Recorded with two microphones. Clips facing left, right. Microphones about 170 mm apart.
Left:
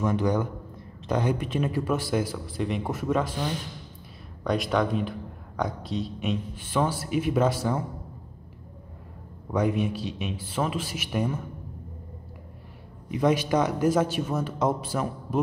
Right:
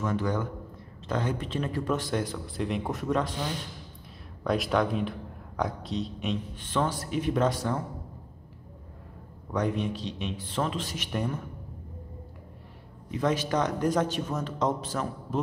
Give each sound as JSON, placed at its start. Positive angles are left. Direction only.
{"t": 0.0, "sound": "speech", "side_deg": 15}
{"t": 9.5, "sound": "speech", "side_deg": 10}
{"t": 13.1, "sound": "speech", "side_deg": 15}